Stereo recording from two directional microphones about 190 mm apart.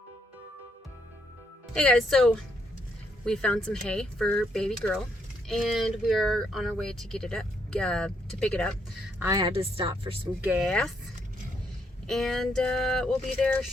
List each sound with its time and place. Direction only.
1.7 s speech: 5° left (ahead or behind)
9.1 s speech: 15° right (ahead or behind)
9.4 s speech: 30° right (ahead or behind)
10.4 s speech: 10° right (ahead or behind)
10.7 s speech: 5° left (ahead or behind)
12.0 s speech: centre (ahead or behind)